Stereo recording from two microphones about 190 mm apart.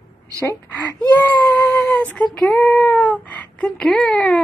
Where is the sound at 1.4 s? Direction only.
Centre (ahead or behind).